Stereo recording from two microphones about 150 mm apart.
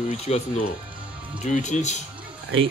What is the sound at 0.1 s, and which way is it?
Speech, 45° left (ahead or behind).